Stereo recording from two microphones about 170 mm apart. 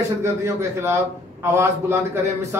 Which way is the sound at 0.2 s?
15° right (ahead or behind).